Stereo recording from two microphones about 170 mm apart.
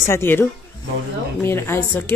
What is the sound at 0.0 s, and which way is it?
A woman's voice, 15° left (ahead or behind).